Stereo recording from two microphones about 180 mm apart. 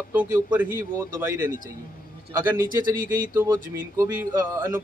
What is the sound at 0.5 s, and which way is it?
Speech, 10° right (ahead or behind).